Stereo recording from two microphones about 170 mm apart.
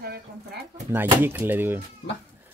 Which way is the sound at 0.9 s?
10° right (ahead or behind).